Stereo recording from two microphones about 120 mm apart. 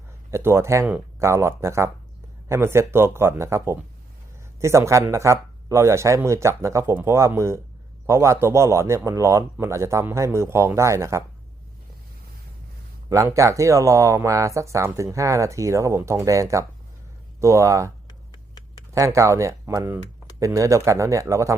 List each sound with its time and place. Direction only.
0.3 s speech: 20° right (ahead or behind)
13.1 s speech: 25° right (ahead or behind)
18.9 s speech: 25° right (ahead or behind)